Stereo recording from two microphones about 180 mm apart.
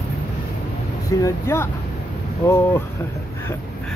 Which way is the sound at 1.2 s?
15° left (ahead or behind).